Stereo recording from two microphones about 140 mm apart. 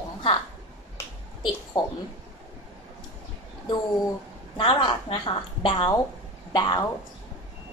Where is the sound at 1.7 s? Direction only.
35° left (ahead or behind).